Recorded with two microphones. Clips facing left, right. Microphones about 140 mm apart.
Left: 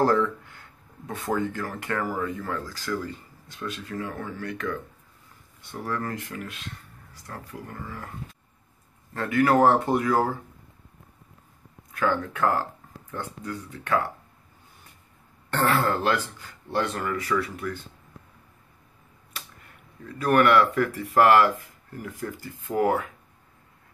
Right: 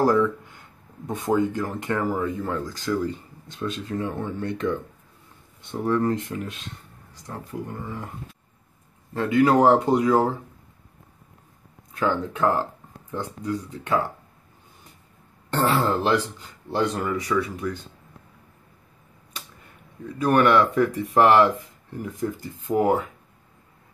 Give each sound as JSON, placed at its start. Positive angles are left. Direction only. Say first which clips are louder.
{"t": 0.0, "sound": "speech", "louder": "right 2 dB", "side_deg": -15}
{"t": 9.1, "sound": "speech", "louder": "right 3 dB", "side_deg": -15}
{"t": 11.9, "sound": "speech", "louder": "right 1 dB", "side_deg": -20}
{"t": 15.5, "sound": "speech", "louder": "right 2 dB", "side_deg": -15}
{"t": 20.2, "sound": "speech", "louder": "right 1 dB", "side_deg": -25}